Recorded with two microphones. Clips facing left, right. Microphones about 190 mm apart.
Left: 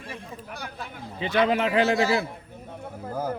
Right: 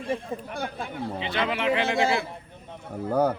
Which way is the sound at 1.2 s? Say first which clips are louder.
Left 6 dB; 45° left (ahead or behind).